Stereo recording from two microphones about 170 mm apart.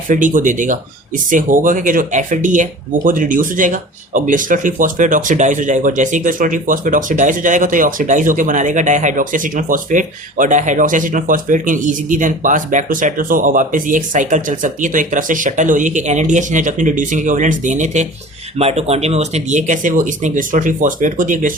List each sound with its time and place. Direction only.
0.1 s speech: 50° right (ahead or behind)